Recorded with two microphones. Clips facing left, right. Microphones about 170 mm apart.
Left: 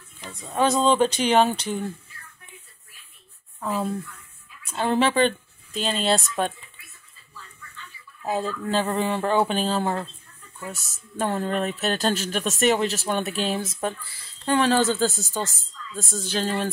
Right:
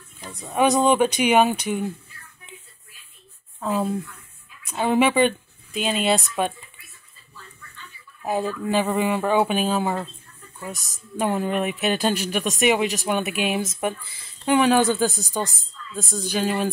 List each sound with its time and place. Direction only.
0.3 s speech: 15° right (ahead or behind)
3.6 s speech: 20° right (ahead or behind)
8.2 s speech: 10° right (ahead or behind)